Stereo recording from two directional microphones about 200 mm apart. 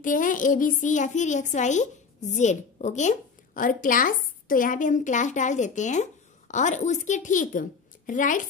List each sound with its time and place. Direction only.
0.0 s a child's voice: 40° left (ahead or behind)